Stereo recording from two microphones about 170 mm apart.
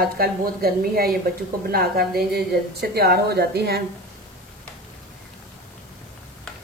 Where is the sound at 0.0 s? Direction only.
65° right (ahead or behind).